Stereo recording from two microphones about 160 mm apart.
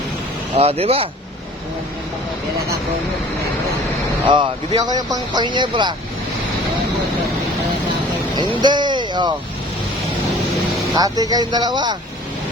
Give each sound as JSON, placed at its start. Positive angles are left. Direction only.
{"t": 0.5, "sound": "speech", "side_deg": -40}
{"t": 4.3, "sound": "speech", "side_deg": -30}
{"t": 8.4, "sound": "speech", "side_deg": -30}
{"t": 10.9, "sound": "speech", "side_deg": -25}